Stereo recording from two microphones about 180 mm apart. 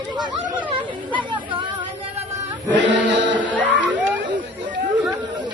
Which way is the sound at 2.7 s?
90° right.